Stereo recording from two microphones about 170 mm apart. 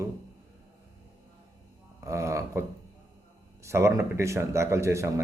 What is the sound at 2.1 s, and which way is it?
Speech, 15° right (ahead or behind).